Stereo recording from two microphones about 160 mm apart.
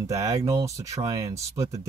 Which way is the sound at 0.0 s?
20° right (ahead or behind).